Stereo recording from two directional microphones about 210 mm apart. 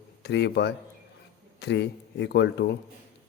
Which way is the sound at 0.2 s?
55° left (ahead or behind).